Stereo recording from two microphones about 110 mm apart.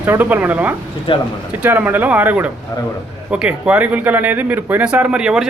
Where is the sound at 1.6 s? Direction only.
15° right (ahead or behind).